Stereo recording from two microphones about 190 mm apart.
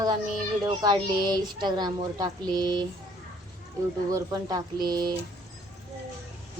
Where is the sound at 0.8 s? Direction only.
20° right (ahead or behind).